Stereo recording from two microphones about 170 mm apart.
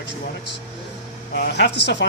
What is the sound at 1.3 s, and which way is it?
Speech, 85° left.